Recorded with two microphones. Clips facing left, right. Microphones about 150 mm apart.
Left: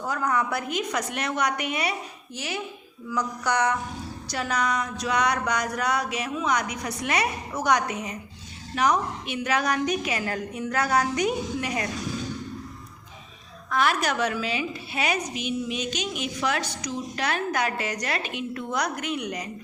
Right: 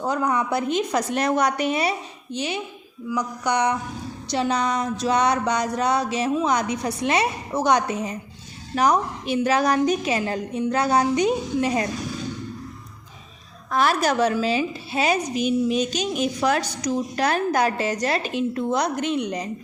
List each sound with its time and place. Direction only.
0.0 s a woman's voice: 20° right (ahead or behind)
3.1 s a sound: 15° right (ahead or behind)
13.7 s a woman's voice: 35° right (ahead or behind)